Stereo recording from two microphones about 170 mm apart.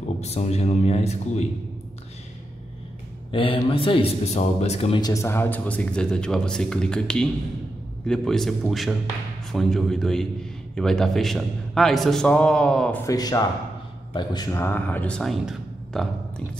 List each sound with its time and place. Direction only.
0.2 s a man's voice: 40° left (ahead or behind)
3.3 s a man's voice: 30° left (ahead or behind)
5.0 s a man's voice: 15° left (ahead or behind)
13.0 s speech: 20° left (ahead or behind); by 16.4 s centre (ahead or behind)